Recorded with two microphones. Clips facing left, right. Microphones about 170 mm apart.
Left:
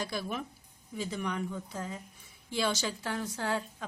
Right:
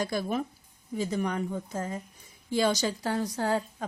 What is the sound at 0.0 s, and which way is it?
A woman's voice, 45° right (ahead or behind).